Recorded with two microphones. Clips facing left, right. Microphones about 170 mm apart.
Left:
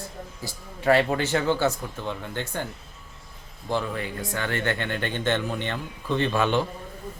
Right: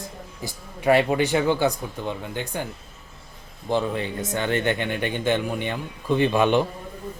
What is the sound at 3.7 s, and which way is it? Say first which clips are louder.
Speech: right 4 dB; 20° right (ahead or behind).